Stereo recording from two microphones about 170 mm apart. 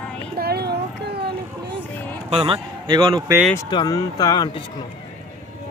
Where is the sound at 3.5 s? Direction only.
25° left (ahead or behind).